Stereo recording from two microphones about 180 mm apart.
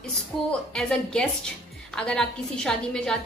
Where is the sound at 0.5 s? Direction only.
5° left (ahead or behind).